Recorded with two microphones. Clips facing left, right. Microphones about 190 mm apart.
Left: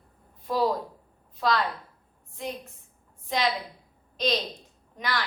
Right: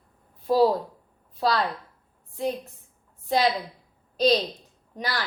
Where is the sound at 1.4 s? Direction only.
35° right (ahead or behind).